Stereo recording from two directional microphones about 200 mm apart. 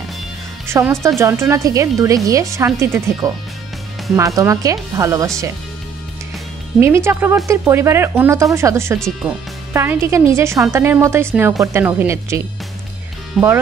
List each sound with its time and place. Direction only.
0.7 s speech: 15° right (ahead or behind)
6.8 s speech: 15° right (ahead or behind)
13.4 s speech: centre (ahead or behind)